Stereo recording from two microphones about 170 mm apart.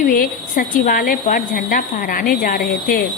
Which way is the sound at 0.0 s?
55° left (ahead or behind).